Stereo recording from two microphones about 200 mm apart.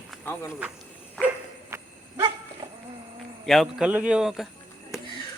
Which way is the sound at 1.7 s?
15° right (ahead or behind).